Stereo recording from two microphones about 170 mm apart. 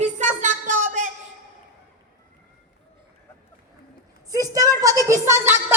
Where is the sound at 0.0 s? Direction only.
45° right (ahead or behind).